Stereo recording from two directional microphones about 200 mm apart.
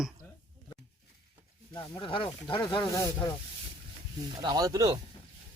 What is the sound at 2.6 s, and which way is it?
Speech, 15° left (ahead or behind).